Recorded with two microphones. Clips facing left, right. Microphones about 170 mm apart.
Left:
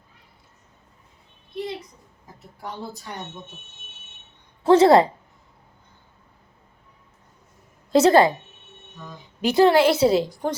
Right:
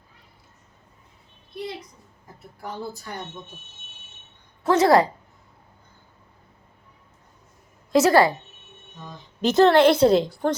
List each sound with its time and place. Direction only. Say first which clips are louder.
4.6 s a woman's voice: left 3 dB; 30° left (ahead or behind)
7.9 s a woman's voice: left 2 dB; 25° left (ahead or behind)
9.4 s a woman's voice: right 1 dB; 10° left (ahead or behind)